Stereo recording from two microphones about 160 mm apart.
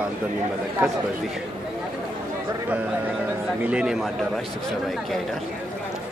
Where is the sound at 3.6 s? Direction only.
5° right (ahead or behind).